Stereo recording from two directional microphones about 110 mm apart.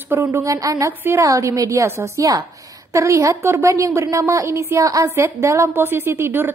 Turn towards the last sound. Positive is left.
turn(degrees=-20)  # may be behind; listen again after turning